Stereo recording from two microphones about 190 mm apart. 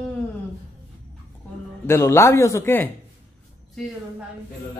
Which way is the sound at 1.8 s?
15° left (ahead or behind).